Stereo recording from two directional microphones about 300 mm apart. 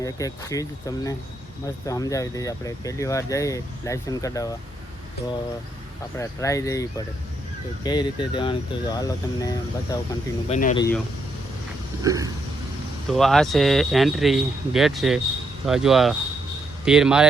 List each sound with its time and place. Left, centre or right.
0.0 s speech: centre
6.1 s speech: centre
7.9 s speech: centre
10.5 s speech: left
12.0 s vehicle: centre
13.1 s speech: centre